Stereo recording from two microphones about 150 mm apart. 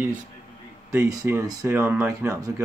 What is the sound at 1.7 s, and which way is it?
Speech, 10° right (ahead or behind).